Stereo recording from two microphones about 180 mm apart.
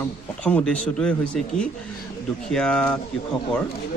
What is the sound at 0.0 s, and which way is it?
Speech, 10° left (ahead or behind).